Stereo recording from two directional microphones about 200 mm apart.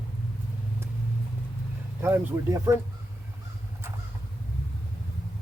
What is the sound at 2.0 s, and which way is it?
Speech, 15° right (ahead or behind).